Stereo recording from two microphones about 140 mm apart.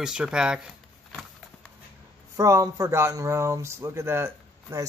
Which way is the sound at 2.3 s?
20° right (ahead or behind).